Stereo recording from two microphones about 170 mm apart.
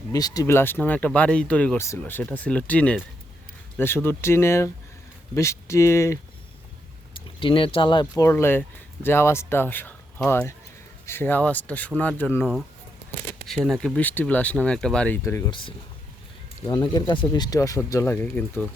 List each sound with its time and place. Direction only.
0.1 s speech: 20° left (ahead or behind)
7.3 s speech: 30° left (ahead or behind); by 12.5 s 10° left (ahead or behind)
13.5 s speech: centre (ahead or behind)
15.4 s speech: 30° left (ahead or behind); by 18.7 s 10° left (ahead or behind)